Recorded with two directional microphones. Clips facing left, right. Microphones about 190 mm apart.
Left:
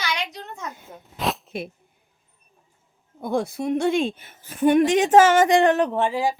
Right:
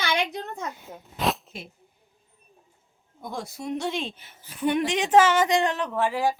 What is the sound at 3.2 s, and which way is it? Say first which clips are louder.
A woman's voice: left 10 dB; 55° left (ahead or behind).